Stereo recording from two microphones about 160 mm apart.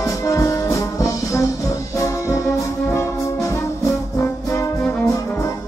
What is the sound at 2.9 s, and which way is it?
Brass instrument, 20° left (ahead or behind).